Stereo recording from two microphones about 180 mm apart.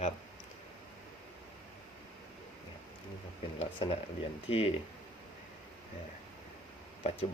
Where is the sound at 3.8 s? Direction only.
30° left (ahead or behind).